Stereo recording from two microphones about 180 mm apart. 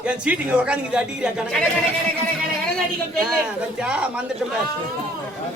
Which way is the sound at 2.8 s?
5° right (ahead or behind).